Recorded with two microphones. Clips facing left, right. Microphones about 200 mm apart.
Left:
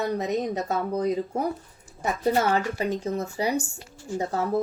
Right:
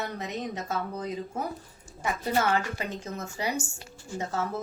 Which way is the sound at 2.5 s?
35° left (ahead or behind).